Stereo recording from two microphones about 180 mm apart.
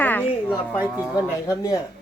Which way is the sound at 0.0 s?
10° left (ahead or behind).